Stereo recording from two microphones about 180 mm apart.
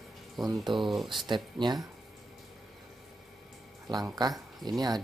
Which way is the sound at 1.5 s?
25° right (ahead or behind).